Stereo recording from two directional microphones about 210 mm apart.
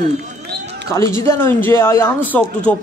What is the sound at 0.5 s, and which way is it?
Run, 50° right (ahead or behind).